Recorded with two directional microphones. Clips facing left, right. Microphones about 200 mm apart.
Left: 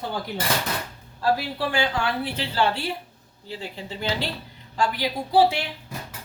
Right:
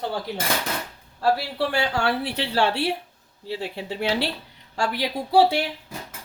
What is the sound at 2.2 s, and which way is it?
Speech, 75° right (ahead or behind).